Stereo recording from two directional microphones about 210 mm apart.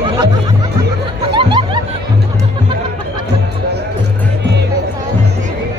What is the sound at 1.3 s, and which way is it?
Music, 20° right (ahead or behind).